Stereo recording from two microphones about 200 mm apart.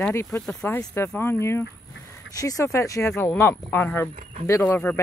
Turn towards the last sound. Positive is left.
turn(degrees=10)  # may be behind; listen again after turning